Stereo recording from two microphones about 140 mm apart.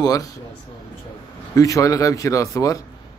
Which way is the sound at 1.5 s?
25° left (ahead or behind).